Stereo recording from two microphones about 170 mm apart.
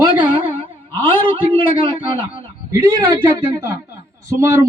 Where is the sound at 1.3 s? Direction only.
30° right (ahead or behind).